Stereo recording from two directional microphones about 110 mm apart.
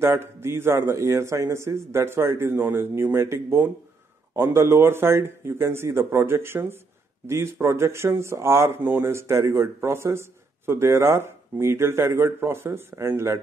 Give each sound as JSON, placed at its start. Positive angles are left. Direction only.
{"t": 0.0, "sound": "speech", "side_deg": -25}